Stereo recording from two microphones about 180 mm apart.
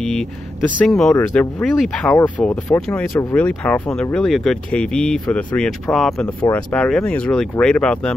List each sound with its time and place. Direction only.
0.0 s speech: 5° left (ahead or behind)
1.1 s speech: 15° left (ahead or behind)
6.2 s speech: 20° left (ahead or behind)
6.7 s speech: 5° left (ahead or behind)